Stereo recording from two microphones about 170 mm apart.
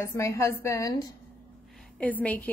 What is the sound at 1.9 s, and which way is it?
Speech, 10° left (ahead or behind).